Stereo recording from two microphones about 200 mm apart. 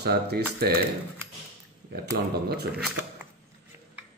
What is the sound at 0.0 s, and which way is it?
Speech, 55° right (ahead or behind).